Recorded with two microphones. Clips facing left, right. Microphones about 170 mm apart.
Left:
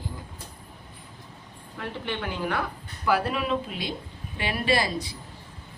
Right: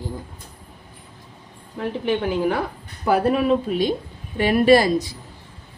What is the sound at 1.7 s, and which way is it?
A woman's voice, 35° right (ahead or behind).